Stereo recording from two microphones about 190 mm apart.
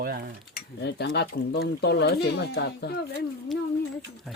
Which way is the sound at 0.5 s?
60° left (ahead or behind).